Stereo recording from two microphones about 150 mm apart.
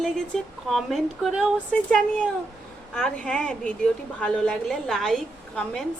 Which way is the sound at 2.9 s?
5° left (ahead or behind).